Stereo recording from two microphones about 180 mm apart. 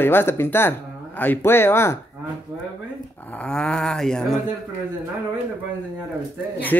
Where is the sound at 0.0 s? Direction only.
10° left (ahead or behind).